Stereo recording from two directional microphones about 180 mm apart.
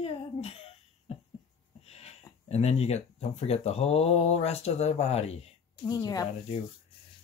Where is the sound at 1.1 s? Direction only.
35° left (ahead or behind).